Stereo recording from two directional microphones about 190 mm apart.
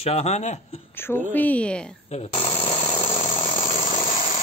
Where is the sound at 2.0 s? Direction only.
35° left (ahead or behind).